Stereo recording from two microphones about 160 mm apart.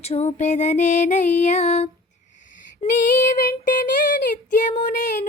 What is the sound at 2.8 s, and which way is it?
Female singing, 40° left (ahead or behind).